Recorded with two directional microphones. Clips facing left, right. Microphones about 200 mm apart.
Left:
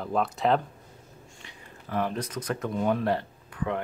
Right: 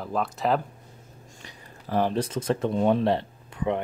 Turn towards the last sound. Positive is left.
turn(degrees=-20)  # may be behind; listen again after turning